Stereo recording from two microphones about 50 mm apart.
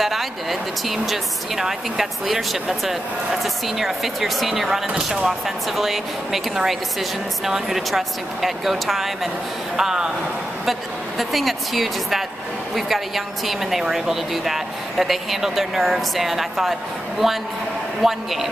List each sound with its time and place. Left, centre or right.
0.0 s speech: centre